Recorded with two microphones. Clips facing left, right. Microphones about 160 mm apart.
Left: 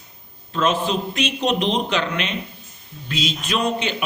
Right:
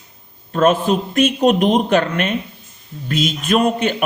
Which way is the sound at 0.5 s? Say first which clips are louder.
Right 6 dB; 50° right (ahead or behind).